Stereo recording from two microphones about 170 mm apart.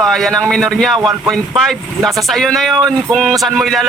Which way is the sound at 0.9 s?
25° right (ahead or behind).